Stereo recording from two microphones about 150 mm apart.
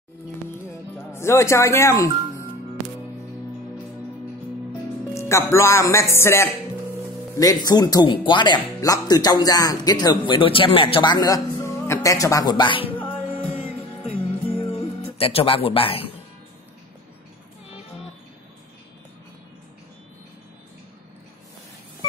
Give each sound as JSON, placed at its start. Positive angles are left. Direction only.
{"t": 0.9, "sound": "speech", "side_deg": 20}
{"t": 5.1, "sound": "speech", "side_deg": 20}
{"t": 14.6, "sound": "music", "side_deg": 40}